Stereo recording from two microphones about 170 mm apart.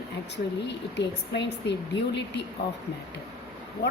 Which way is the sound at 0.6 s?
90° left.